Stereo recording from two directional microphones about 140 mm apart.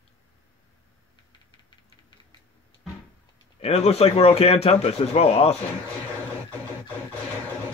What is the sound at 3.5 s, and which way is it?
Speech, 50° left (ahead or behind).